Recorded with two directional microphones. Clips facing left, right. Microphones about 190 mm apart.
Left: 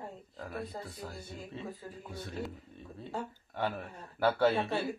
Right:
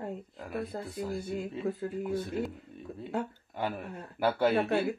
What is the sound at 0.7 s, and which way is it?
Speech, 55° right (ahead or behind).